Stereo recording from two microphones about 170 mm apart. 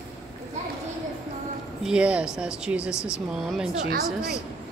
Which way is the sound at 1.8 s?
5° right (ahead or behind).